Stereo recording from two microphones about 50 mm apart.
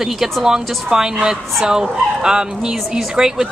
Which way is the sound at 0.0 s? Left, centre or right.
Centre.